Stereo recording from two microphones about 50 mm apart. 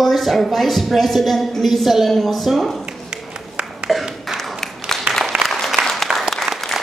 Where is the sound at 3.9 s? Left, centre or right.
Centre.